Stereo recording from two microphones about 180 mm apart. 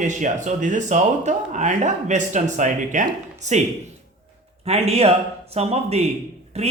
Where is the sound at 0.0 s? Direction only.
45° right (ahead or behind).